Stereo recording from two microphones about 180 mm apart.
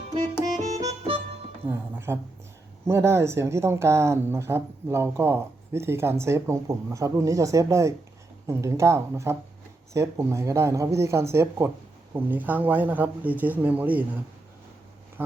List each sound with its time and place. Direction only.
0.6 s accordion: 35° right (ahead or behind)
1.6 s music: 15° right (ahead or behind)
2.8 s speech: 15° right (ahead or behind)